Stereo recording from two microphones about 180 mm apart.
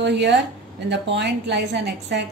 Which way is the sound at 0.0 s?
75° right (ahead or behind).